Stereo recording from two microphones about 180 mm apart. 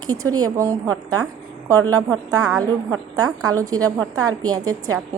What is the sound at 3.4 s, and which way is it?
Speech, 20° right (ahead or behind).